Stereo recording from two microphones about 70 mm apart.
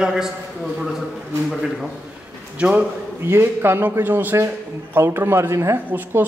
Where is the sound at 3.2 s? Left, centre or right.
Right.